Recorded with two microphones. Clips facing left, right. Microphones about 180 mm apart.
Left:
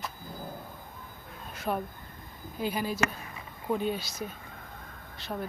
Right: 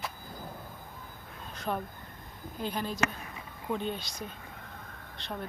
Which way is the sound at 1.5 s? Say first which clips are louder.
Left 2 dB; 5° left (ahead or behind).